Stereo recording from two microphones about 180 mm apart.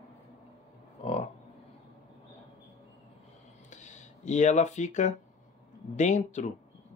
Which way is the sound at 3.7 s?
40° left (ahead or behind).